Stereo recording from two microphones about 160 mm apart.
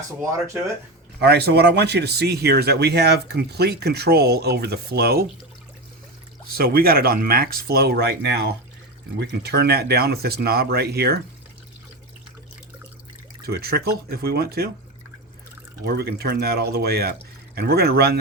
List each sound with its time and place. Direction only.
0.2 s speech: 20° right (ahead or behind)
1.2 s speech: 90° right
6.6 s speech: 70° right (ahead or behind)
13.4 s speech: 75° right (ahead or behind)
15.8 s speech: 85° right